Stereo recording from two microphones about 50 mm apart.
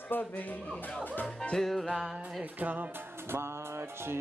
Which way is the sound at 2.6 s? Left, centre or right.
Right.